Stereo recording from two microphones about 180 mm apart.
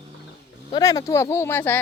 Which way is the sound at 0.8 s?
20° left (ahead or behind).